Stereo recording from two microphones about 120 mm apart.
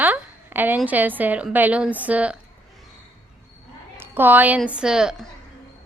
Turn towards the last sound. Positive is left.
turn(degrees=0)  # may be behind; listen again after turning